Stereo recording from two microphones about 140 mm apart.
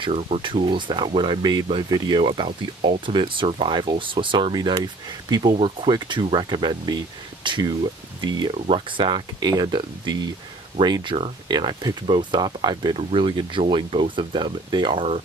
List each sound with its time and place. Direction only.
0.0 s speech: 40° right (ahead or behind)